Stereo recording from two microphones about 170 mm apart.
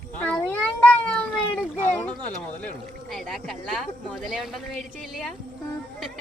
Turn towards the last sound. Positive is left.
turn(degrees=0)  # may be behind; listen again after turning